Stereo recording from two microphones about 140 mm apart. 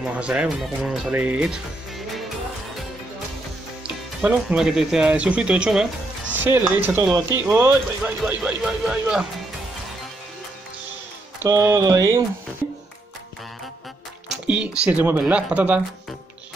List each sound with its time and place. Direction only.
0.0 s speech: 10° right (ahead or behind)
1.1 s speech: 10° right (ahead or behind)
3.8 s speech: 10° right (ahead or behind)
11.3 s speech: 20° right (ahead or behind)
14.3 s speech: 5° right (ahead or behind)